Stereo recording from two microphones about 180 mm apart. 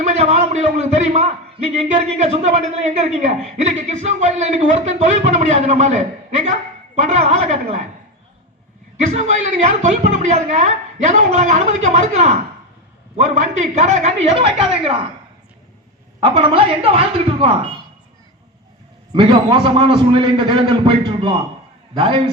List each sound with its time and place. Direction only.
0.0 s speech: 35° right (ahead or behind)
9.0 s speech: 40° right (ahead or behind)
16.2 s a man's voice: 30° right (ahead or behind)
19.1 s a man's voice: 25° right (ahead or behind)